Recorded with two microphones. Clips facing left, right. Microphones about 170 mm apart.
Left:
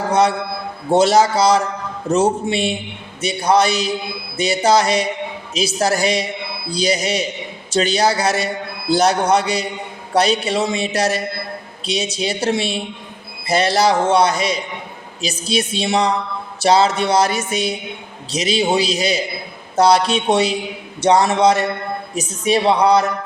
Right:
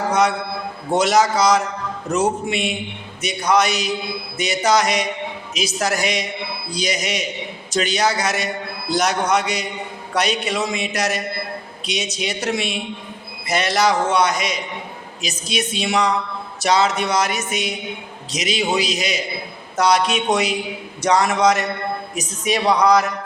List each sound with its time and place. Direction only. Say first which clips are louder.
0.1 s a man's voice: left 4 dB; 30° left (ahead or behind)
5.5 s music: left 4 dB; 30° left (ahead or behind)
21.0 s a woman's voice: left 3 dB; 30° left (ahead or behind)